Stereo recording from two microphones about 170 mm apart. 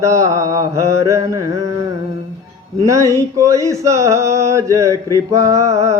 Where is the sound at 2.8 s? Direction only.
20° right (ahead or behind).